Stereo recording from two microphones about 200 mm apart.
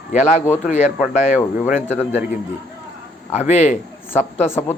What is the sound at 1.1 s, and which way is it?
Speech, 40° left (ahead or behind).